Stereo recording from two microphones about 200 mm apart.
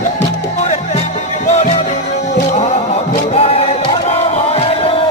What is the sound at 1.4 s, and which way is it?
Music, 35° left (ahead or behind).